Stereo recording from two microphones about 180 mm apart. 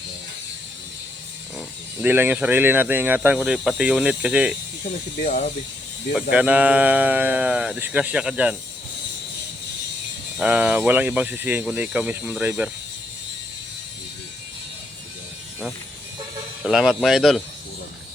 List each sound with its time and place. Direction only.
2.0 s speech: 10° right (ahead or behind)
5.2 s speech: 40° left (ahead or behind)
6.3 s speech: 5° right (ahead or behind)
10.3 s speech: 5° right (ahead or behind)
16.6 s speech: centre (ahead or behind)